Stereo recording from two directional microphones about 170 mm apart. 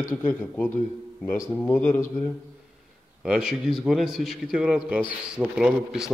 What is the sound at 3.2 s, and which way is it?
A man's voice, 5° right (ahead or behind).